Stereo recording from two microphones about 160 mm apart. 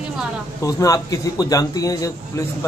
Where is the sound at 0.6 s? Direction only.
20° left (ahead or behind).